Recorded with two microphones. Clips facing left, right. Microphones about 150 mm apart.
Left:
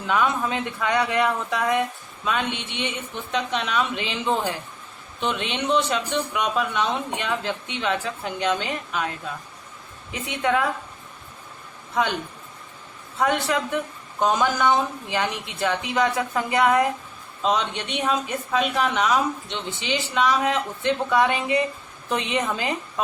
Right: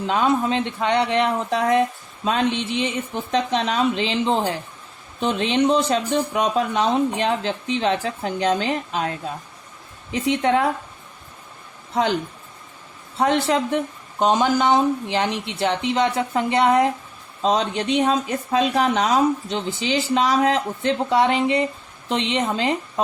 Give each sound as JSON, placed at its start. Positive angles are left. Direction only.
{"t": 0.1, "sound": "speech", "side_deg": -30}
{"t": 13.1, "sound": "speech", "side_deg": -30}